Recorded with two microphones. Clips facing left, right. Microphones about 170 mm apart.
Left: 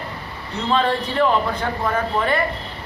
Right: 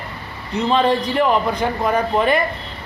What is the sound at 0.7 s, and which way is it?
A man's voice, 15° right (ahead or behind).